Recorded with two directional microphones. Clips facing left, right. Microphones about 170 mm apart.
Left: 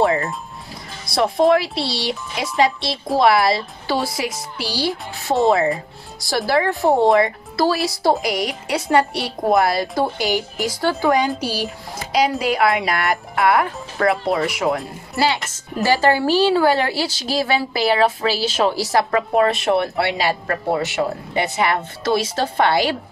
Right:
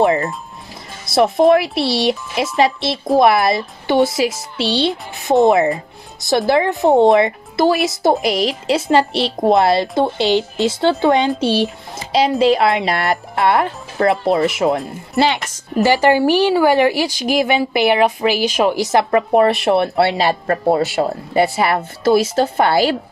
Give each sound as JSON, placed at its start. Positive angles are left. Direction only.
{"t": 0.0, "sound": "a woman's voice", "side_deg": -20}
{"t": 20.2, "sound": "speech", "side_deg": -40}